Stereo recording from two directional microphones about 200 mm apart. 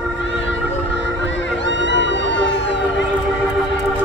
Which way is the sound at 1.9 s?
65° left (ahead or behind).